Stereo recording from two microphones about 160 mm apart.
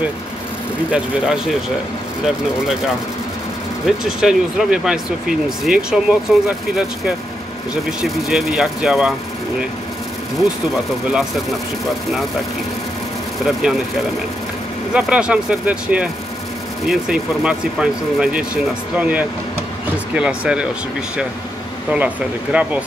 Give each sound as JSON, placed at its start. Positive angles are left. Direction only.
{"t": 0.9, "sound": "speech", "side_deg": -5}
{"t": 3.8, "sound": "speech", "side_deg": -5}
{"t": 8.0, "sound": "speech", "side_deg": 0}
{"t": 10.7, "sound": "speech", "side_deg": 0}
{"t": 13.5, "sound": "speech", "side_deg": 0}
{"t": 21.9, "sound": "speech", "side_deg": -10}